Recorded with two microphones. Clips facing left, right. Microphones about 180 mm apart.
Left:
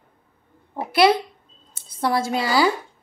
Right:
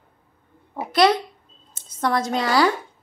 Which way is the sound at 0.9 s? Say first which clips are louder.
Left 1 dB; 10° left (ahead or behind).